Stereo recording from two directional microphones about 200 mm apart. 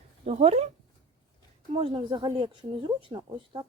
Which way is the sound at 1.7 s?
25° right (ahead or behind).